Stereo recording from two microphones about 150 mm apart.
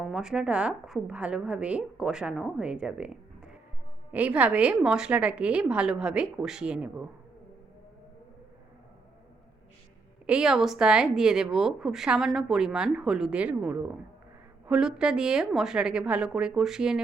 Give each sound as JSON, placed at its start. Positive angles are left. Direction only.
{"t": 0.0, "sound": "a woman's voice", "side_deg": -5}
{"t": 10.2, "sound": "a woman's voice", "side_deg": -5}